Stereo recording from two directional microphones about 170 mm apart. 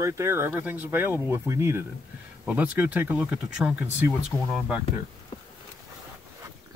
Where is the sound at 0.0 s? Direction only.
15° right (ahead or behind); by 4.7 s centre (ahead or behind).